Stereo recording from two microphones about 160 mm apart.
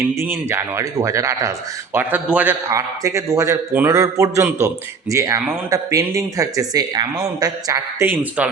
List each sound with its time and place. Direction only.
0.0 s speech: 15° right (ahead or behind)